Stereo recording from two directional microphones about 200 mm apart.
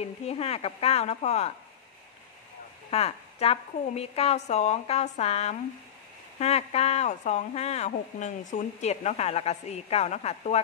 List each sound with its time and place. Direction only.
0.0 s a woman's voice: 30° left (ahead or behind)
2.9 s a woman's voice: 30° left (ahead or behind)